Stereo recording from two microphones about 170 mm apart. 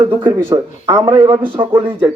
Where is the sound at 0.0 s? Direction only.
20° right (ahead or behind).